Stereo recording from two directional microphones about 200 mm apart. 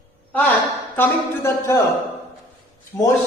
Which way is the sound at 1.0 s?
15° left (ahead or behind).